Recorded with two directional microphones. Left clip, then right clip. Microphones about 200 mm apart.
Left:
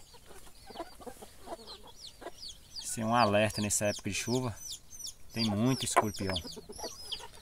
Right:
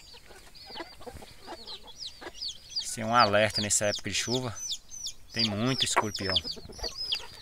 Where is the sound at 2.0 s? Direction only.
65° left (ahead or behind).